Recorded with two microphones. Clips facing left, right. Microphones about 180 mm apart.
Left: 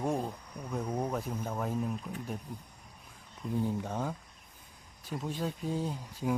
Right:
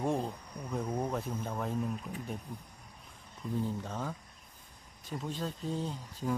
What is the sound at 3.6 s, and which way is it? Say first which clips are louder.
Speech: left 4 dB; 15° left (ahead or behind).